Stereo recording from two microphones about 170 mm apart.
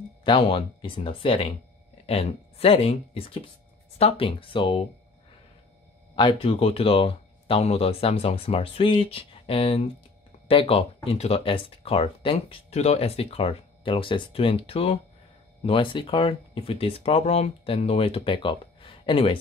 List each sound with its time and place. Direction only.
0.2 s speech: 30° left (ahead or behind)
6.1 s speech: 30° left (ahead or behind)